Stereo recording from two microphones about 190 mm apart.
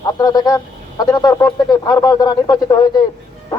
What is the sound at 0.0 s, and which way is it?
Speech, 20° left (ahead or behind).